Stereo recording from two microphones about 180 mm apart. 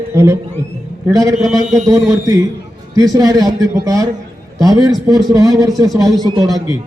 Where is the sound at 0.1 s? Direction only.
15° right (ahead or behind).